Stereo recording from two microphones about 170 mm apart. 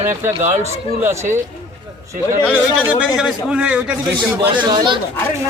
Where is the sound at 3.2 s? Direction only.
5° right (ahead or behind).